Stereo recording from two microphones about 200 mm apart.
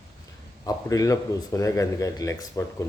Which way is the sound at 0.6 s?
15° left (ahead or behind).